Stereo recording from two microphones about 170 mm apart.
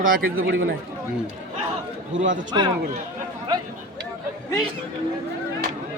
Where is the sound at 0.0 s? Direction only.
55° right (ahead or behind); by 0.6 s 75° right (ahead or behind).